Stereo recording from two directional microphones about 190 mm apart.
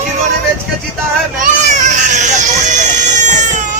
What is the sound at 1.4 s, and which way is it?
Baby cry, 40° right (ahead or behind).